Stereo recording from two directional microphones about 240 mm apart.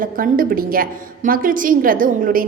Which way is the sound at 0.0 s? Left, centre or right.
Right.